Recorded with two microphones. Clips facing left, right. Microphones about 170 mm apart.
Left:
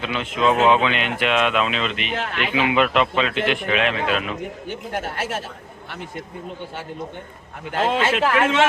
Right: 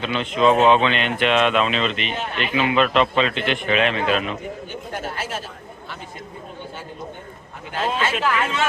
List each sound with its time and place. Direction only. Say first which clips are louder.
0.0 s speech: right 2 dB; 5° left (ahead or behind)
2.1 s speech: left 1 dB; 85° left
2.6 s speech: right 1 dB; 15° left (ahead or behind)
4.9 s speech: left 2 dB; 65° left (ahead or behind)
7.7 s speech: left 3 dB; 70° left (ahead or behind)